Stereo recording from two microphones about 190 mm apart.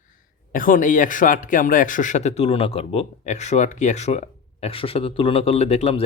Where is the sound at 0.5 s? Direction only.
45° left (ahead or behind).